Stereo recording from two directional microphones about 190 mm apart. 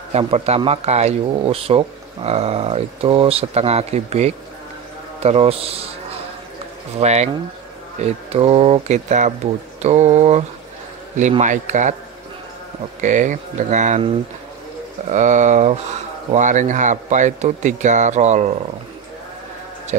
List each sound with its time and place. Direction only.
0.1 s speech: 35° right (ahead or behind)
7.0 s speech: 35° right (ahead or behind)
13.0 s speech: 40° right (ahead or behind)
15.0 s speech: 40° right (ahead or behind)
19.9 s speech: 45° right (ahead or behind)